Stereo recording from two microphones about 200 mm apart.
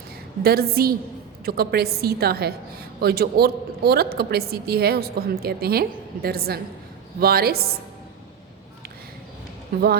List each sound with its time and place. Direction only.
0.4 s a woman's voice: 50° right (ahead or behind)